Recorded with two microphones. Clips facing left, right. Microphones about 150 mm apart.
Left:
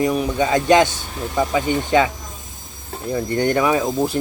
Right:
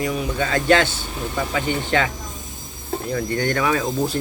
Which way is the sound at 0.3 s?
20° left (ahead or behind).